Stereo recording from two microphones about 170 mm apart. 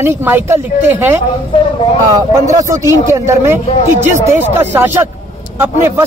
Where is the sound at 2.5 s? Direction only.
20° right (ahead or behind).